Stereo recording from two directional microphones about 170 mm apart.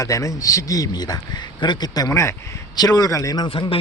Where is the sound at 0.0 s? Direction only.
20° left (ahead or behind).